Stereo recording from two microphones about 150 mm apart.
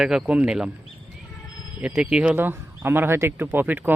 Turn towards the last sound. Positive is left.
turn(degrees=-10)  # may be behind; listen again after turning